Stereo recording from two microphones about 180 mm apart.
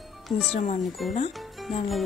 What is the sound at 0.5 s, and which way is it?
Speech, 35° left (ahead or behind).